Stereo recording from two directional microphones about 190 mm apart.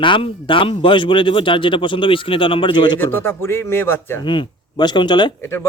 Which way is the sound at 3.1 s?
10° left (ahead or behind).